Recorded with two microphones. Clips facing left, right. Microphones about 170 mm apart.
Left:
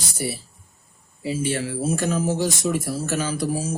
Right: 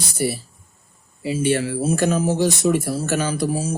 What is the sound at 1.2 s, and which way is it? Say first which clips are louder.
Speech: right 4 dB; 70° right (ahead or behind).